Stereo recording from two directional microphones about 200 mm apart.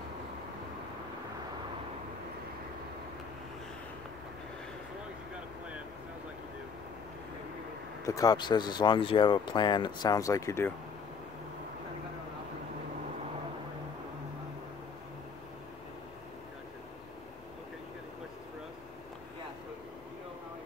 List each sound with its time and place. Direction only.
8.0 s speech: 15° left (ahead or behind)